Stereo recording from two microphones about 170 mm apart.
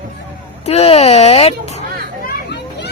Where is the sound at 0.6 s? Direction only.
35° left (ahead or behind).